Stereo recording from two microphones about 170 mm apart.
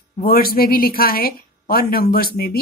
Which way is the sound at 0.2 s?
60° left (ahead or behind).